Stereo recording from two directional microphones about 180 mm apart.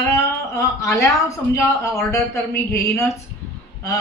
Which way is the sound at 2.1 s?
15° left (ahead or behind).